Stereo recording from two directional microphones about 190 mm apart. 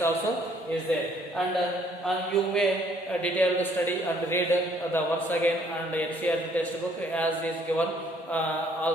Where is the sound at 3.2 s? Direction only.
10° left (ahead or behind).